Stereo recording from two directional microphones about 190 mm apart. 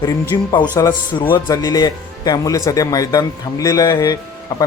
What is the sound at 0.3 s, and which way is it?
Speech, 20° left (ahead or behind).